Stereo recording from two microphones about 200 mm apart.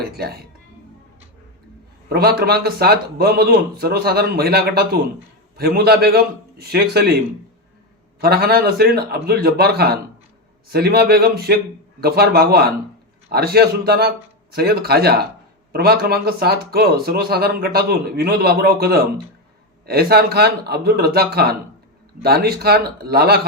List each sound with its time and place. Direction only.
0.0 s speech: 50° right (ahead or behind)
2.0 s speech: 50° right (ahead or behind)
8.2 s speech: 50° right (ahead or behind)